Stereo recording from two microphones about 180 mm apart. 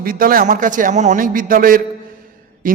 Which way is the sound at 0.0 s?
55° right (ahead or behind).